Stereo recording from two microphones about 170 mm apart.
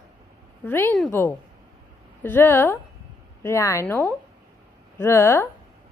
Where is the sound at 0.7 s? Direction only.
15° left (ahead or behind).